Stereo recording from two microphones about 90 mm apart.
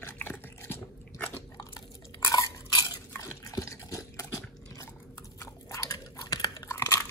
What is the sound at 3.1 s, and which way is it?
Liquid, 40° left (ahead or behind).